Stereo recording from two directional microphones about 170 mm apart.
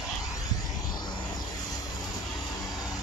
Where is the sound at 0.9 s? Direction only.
25° left (ahead or behind).